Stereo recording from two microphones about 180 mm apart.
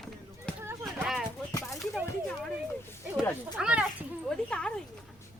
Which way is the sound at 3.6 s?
5° right (ahead or behind).